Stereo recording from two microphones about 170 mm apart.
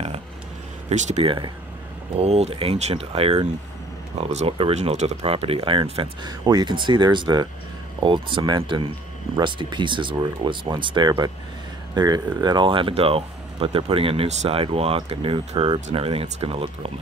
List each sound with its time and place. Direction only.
0.8 s speech: 40° right (ahead or behind)